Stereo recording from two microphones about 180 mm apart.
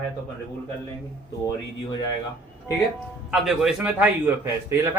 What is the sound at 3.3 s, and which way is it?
A man's voice, centre (ahead or behind).